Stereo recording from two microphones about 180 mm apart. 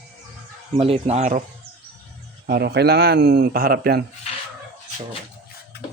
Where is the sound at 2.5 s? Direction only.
60° right (ahead or behind).